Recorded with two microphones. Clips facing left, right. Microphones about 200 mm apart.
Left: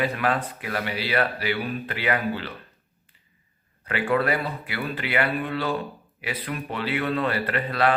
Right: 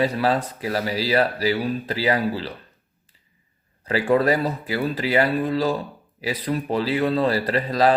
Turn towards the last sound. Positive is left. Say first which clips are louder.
# right 4 dB
turn(degrees=-35)  # may be behind; listen again after turning